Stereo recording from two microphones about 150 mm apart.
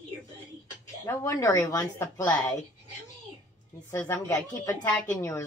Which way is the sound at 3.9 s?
20° left (ahead or behind).